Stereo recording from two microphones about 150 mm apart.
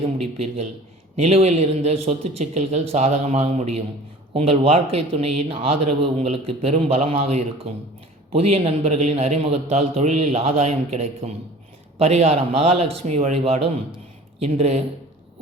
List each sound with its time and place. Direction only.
0.4 s a man's voice: 45° right (ahead or behind)